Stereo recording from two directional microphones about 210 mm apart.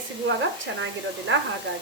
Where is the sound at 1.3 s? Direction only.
65° right (ahead or behind).